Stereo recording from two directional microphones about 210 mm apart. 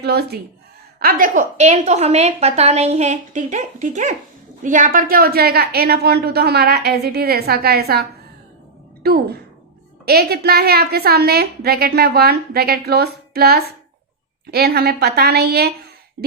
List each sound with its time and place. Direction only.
0.0 s a woman's voice: 50° right (ahead or behind)
9.0 s a woman's voice: 45° right (ahead or behind)